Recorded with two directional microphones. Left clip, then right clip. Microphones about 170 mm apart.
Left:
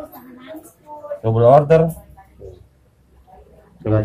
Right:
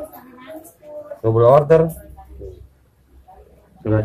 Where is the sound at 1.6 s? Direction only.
15° right (ahead or behind).